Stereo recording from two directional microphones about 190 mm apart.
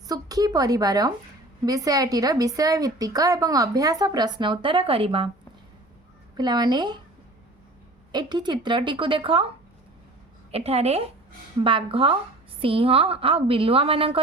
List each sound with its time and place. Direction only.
0.1 s a woman's voice: 20° right (ahead or behind)
6.3 s a woman's voice: 20° right (ahead or behind)
8.1 s a woman's voice: 20° right (ahead or behind)
10.5 s a woman's voice: 35° right (ahead or behind)